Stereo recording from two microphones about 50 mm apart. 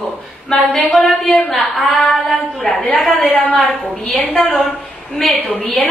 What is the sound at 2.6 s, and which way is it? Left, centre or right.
Speech, left.